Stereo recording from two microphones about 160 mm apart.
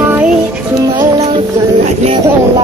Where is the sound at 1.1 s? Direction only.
35° right (ahead or behind).